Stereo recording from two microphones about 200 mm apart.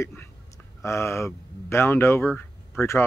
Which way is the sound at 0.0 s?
10° left (ahead or behind).